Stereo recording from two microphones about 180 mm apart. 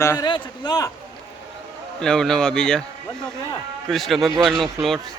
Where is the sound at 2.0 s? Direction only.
5° left (ahead or behind).